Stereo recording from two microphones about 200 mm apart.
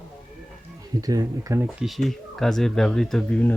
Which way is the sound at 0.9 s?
20° right (ahead or behind).